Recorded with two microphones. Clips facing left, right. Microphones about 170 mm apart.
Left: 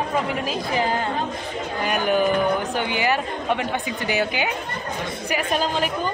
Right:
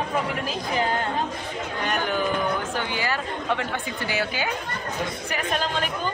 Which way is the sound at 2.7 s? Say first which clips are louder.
Left 5 dB; 20° left (ahead or behind).